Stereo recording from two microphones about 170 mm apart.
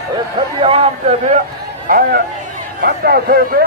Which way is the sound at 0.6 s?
35° right (ahead or behind).